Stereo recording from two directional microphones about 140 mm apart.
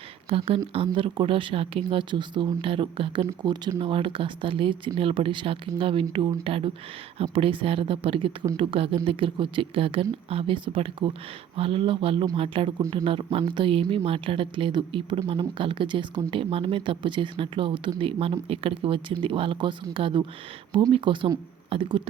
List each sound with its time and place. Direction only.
0.3 s speech: 40° right (ahead or behind)